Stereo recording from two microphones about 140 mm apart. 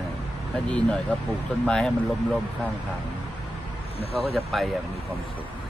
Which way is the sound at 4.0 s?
45° left (ahead or behind).